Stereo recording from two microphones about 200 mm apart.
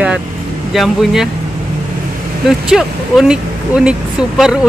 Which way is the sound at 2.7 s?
5° right (ahead or behind).